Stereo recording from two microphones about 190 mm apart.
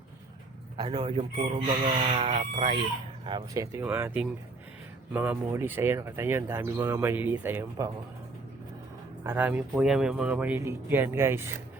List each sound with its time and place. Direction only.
0.8 s speech: 25° right (ahead or behind)
9.2 s speech: 10° right (ahead or behind)